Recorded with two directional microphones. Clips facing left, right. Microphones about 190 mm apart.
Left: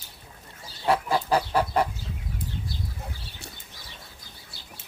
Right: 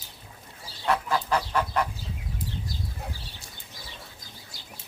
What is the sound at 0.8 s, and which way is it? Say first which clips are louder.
Fowl: left 2 dB; 30° left (ahead or behind).